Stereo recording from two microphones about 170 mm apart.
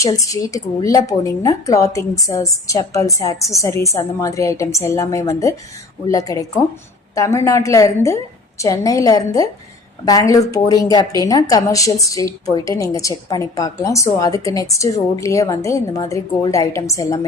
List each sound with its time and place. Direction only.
0.0 s a woman's voice: 20° left (ahead or behind)